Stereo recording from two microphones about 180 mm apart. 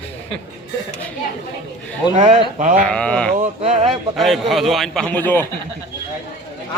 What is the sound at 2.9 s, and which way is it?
Speech, 5° left (ahead or behind).